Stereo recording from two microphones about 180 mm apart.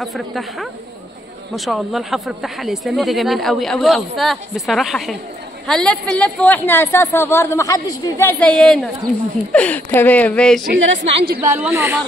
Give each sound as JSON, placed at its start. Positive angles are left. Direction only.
{"t": 0.0, "sound": "speech", "side_deg": 0}
{"t": 10.9, "sound": "a woman's voice", "side_deg": -80}
{"t": 11.4, "sound": "a woman's voice", "side_deg": -15}